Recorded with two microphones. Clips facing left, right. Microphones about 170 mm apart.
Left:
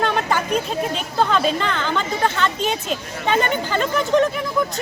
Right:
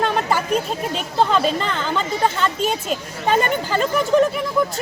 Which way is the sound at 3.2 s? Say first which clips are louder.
Right 1 dB; 35° right (ahead or behind).